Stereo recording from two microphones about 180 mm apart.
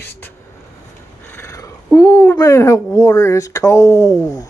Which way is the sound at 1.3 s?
15° left (ahead or behind).